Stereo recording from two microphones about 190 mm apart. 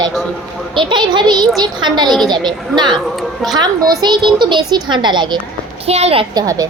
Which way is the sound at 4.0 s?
25° right (ahead or behind).